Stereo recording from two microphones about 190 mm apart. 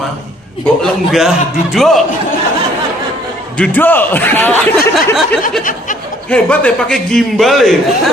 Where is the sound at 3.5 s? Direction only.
10° left (ahead or behind).